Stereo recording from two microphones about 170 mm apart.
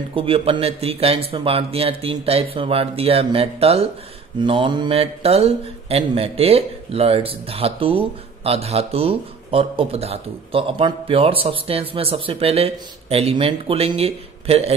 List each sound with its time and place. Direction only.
0.1 s speech: 35° right (ahead or behind)